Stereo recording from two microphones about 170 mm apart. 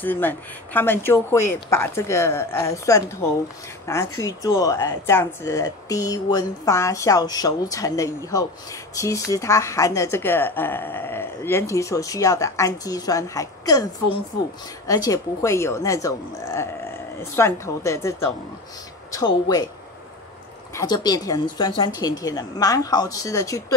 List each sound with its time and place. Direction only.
0.0 s a woman's voice: 10° left (ahead or behind)
14.9 s a woman's voice: 20° left (ahead or behind)
20.7 s speech: 25° left (ahead or behind)